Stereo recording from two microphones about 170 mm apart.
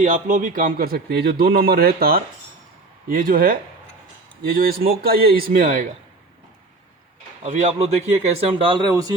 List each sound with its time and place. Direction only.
0.0 s a man's voice: 45° right (ahead or behind)
7.4 s speech: 40° right (ahead or behind); by 9.1 s 20° right (ahead or behind)